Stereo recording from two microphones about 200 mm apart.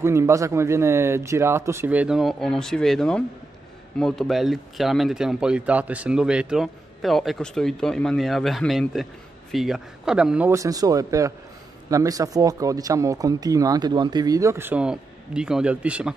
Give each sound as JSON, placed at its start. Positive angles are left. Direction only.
{"t": 0.0, "sound": "speech", "side_deg": -15}